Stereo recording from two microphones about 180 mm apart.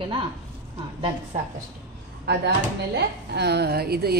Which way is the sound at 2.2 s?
65° right (ahead or behind).